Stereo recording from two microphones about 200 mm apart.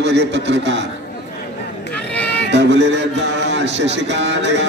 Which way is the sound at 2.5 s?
60° right (ahead or behind).